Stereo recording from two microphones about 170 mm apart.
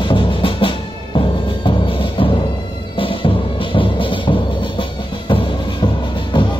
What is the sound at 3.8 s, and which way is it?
Music, 30° left (ahead or behind).